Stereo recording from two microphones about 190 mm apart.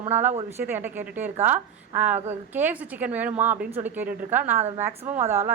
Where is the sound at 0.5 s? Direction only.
10° right (ahead or behind).